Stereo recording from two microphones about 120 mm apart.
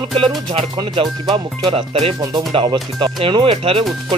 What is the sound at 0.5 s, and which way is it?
Speech, 45° right (ahead or behind).